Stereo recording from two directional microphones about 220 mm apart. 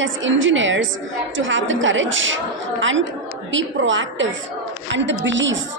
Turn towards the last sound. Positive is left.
turn(degrees=-60)  # may be behind; listen again after turning